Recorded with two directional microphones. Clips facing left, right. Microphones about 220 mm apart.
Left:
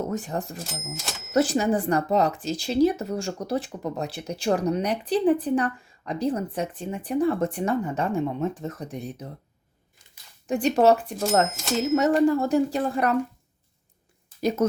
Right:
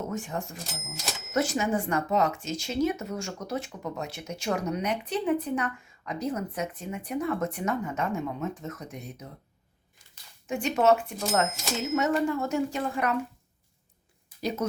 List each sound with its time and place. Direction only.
0.1 s speech: 35° left (ahead or behind)
0.9 s speech: centre (ahead or behind)
1.3 s speech: 35° left (ahead or behind)
10.4 s speech: 35° left (ahead or behind)